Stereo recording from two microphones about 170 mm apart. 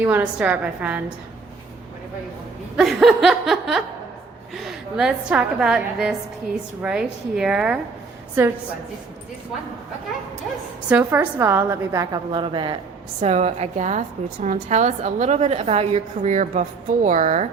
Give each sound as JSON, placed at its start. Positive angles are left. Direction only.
{"t": 0.0, "sound": "a woman's voice", "side_deg": -10}
{"t": 2.7, "sound": "a woman's voice", "side_deg": 0}
{"t": 10.8, "sound": "a woman's voice", "side_deg": -10}
{"t": 13.2, "sound": "a woman's voice", "side_deg": -40}